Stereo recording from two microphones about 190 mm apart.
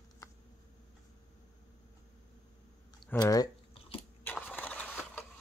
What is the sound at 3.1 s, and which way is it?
Drip, 20° left (ahead or behind).